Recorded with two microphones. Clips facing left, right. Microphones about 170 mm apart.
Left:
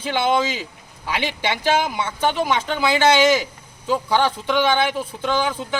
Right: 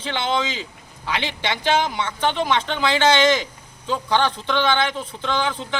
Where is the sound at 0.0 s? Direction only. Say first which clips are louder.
Left 4 dB; 10° left (ahead or behind).